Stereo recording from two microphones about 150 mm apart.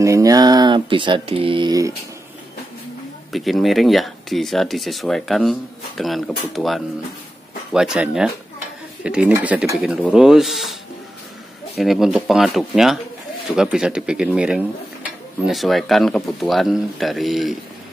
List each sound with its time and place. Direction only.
0.0 s speech: 20° right (ahead or behind)
3.3 s speech: centre (ahead or behind)